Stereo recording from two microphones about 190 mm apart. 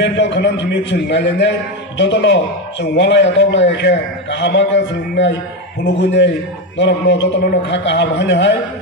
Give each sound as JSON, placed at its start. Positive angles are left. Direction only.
{"t": 0.0, "sound": "a man's voice", "side_deg": 65}